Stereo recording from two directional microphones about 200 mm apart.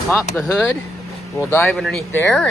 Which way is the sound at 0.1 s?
10° left (ahead or behind).